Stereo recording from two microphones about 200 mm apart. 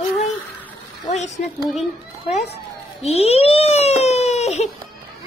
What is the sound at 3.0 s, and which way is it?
Baby cry, 30° left (ahead or behind).